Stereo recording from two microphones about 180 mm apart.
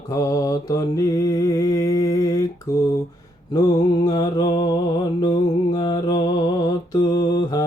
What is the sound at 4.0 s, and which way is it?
Mantra, 20° left (ahead or behind).